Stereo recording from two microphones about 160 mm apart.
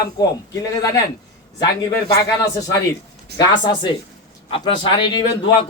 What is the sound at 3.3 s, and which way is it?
A man's voice, 25° left (ahead or behind).